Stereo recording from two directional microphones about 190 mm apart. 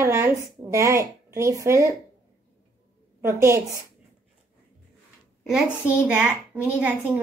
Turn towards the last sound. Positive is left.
turn(degrees=-5)  # may be behind; listen again after turning